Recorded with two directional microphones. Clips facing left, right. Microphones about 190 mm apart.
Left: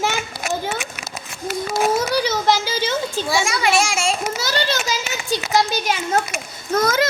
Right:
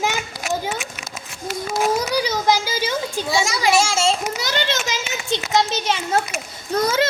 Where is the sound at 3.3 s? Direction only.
25° right (ahead or behind).